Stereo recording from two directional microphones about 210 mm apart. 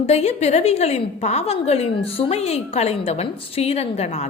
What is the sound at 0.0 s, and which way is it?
A woman's voice, 30° left (ahead or behind).